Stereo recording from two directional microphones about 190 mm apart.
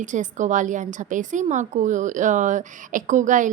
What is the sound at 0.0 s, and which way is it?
A woman's voice, 40° right (ahead or behind).